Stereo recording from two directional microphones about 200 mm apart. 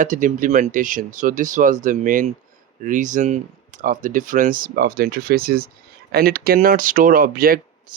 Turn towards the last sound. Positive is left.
turn(degrees=-45)  # may be behind; listen again after turning